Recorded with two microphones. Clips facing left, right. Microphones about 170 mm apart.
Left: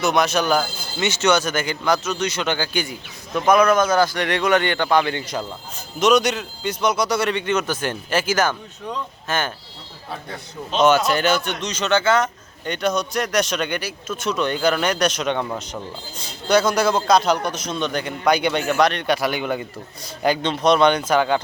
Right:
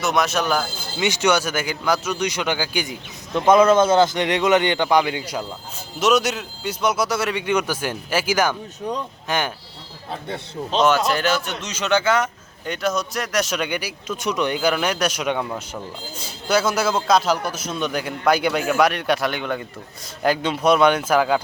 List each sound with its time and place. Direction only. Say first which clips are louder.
0.0 s speech: left 2 dB; centre (ahead or behind)
1.0 s speech: even; 10° right (ahead or behind)
3.3 s speech: right 2 dB; 25° right (ahead or behind)
10.1 s speech: right 3 dB; 25° right (ahead or behind)
10.8 s speech: left 2 dB; centre (ahead or behind)